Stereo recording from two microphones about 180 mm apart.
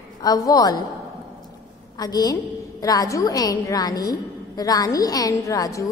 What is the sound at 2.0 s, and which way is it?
A woman's voice, 20° left (ahead or behind).